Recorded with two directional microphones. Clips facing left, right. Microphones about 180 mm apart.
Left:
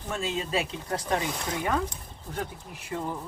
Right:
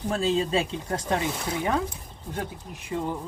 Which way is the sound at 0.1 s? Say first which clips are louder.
Right 5 dB; 30° right (ahead or behind).